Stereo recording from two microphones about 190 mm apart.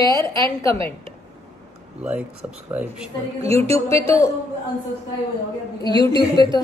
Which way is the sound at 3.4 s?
35° right (ahead or behind).